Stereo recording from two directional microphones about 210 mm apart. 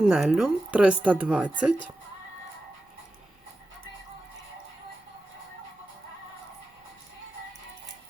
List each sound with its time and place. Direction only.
0.0 s speech: centre (ahead or behind)